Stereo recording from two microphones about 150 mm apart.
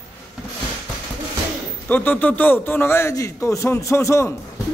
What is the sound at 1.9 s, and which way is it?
A man's voice, 10° left (ahead or behind).